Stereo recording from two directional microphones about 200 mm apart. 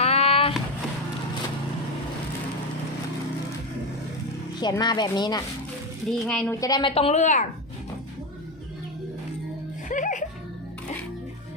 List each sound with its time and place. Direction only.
0.0 s vehicle: 30° left (ahead or behind)
4.6 s a woman's voice: 20° left (ahead or behind)
6.1 s a woman's voice: 5° left (ahead or behind); by 7.4 s 35° left (ahead or behind)
9.9 s music: 40° left (ahead or behind)